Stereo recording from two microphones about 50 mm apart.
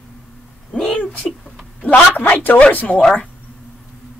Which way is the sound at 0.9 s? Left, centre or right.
Left.